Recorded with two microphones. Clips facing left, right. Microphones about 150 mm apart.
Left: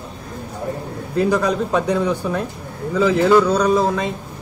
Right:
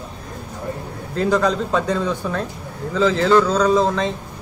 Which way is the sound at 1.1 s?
10° left (ahead or behind).